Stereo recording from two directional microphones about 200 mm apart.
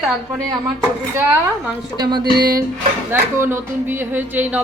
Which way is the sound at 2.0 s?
20° right (ahead or behind).